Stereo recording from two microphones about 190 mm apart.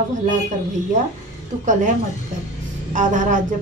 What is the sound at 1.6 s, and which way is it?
Speech, 40° right (ahead or behind).